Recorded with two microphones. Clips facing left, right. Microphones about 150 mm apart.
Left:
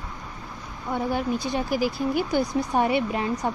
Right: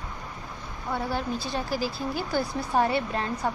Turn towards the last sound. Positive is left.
turn(degrees=15)  # may be behind; listen again after turning